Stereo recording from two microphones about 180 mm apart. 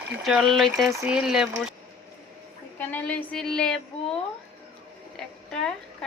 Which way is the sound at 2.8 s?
10° left (ahead or behind).